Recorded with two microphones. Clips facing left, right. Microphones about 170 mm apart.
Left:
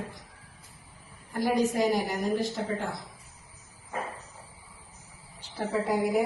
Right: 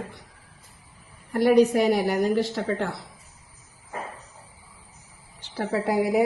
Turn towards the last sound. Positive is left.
turn(degrees=-70)  # may be behind; listen again after turning